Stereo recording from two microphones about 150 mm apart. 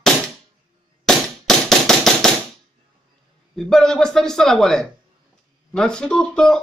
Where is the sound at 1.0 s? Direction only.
5° left (ahead or behind).